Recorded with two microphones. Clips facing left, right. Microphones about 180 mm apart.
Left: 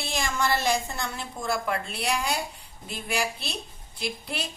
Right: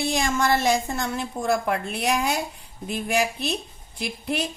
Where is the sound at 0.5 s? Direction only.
50° right (ahead or behind).